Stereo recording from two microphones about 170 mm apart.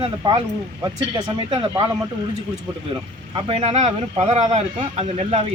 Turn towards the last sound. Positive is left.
turn(degrees=-35)  # may be behind; listen again after turning